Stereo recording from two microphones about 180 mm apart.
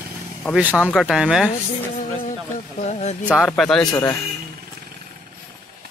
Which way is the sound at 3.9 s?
20° left (ahead or behind).